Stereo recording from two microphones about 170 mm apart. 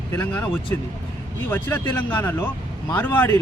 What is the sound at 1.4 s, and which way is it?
Speech, 10° left (ahead or behind).